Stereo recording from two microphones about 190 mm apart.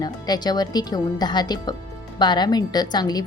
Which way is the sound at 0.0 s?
20° left (ahead or behind).